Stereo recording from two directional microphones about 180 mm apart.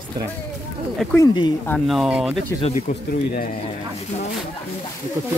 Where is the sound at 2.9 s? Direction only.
50° left (ahead or behind).